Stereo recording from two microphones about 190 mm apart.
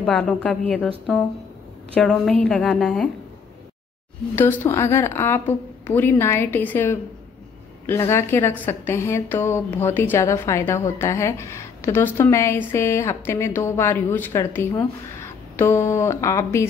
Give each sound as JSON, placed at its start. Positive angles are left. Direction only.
{"t": 0.0, "sound": "speech", "side_deg": 5}
{"t": 4.4, "sound": "a woman's voice", "side_deg": 15}